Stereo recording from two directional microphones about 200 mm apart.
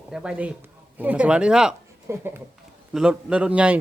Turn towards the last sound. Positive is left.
turn(degrees=-5)  # may be behind; listen again after turning